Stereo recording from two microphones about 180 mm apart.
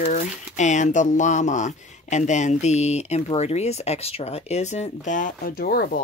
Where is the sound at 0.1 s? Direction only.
45° left (ahead or behind).